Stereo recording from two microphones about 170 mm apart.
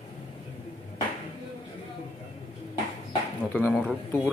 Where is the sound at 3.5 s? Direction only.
10° left (ahead or behind).